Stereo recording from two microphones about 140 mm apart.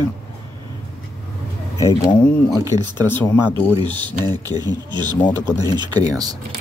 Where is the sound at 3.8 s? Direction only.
35° right (ahead or behind).